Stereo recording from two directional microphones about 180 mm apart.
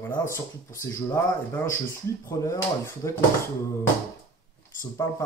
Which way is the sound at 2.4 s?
15° left (ahead or behind).